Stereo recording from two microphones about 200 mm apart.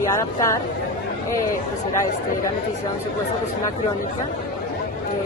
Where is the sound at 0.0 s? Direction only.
15° left (ahead or behind).